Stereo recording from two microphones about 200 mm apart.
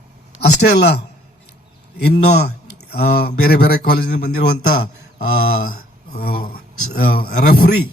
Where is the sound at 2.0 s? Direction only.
55° left (ahead or behind).